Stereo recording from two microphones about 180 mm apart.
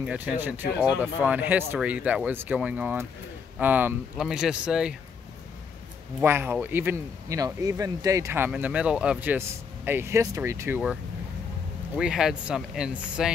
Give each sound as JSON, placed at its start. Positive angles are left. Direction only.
{"t": 0.0, "sound": "speech", "side_deg": -5}
{"t": 6.2, "sound": "speech", "side_deg": -10}
{"t": 12.0, "sound": "speech", "side_deg": -5}